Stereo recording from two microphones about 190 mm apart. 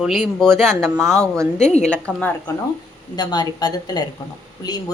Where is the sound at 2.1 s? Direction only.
5° left (ahead or behind).